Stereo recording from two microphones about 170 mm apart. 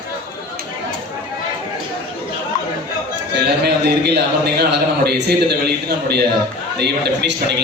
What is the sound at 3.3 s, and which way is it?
A man's voice, 75° right (ahead or behind).